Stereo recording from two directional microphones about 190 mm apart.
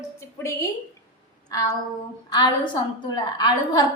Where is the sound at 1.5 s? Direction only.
20° left (ahead or behind).